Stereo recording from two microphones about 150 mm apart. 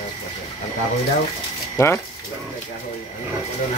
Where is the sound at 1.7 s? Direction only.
15° left (ahead or behind).